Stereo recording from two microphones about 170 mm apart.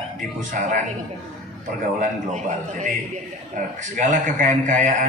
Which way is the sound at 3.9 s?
50° right (ahead or behind).